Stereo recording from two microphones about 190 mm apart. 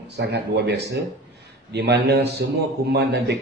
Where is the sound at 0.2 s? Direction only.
65° right (ahead or behind).